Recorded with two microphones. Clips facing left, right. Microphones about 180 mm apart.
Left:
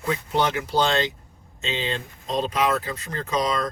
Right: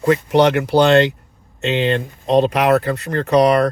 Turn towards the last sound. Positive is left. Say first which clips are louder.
# right 11 dB
turn(degrees=-70)  # may be behind; listen again after turning